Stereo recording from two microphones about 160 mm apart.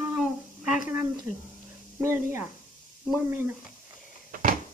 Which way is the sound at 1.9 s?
15° right (ahead or behind).